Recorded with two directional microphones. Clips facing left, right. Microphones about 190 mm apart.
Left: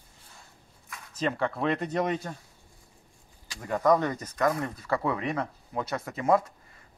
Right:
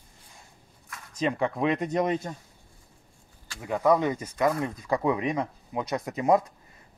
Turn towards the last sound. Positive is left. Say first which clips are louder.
# right 2 dB
turn(degrees=-15)  # may be behind; listen again after turning